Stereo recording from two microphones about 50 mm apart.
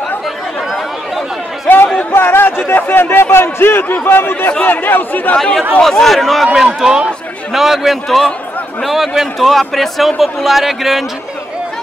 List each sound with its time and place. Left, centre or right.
2.1 s speech: left
5.8 s a man's voice: centre
6.4 s a man's voice: centre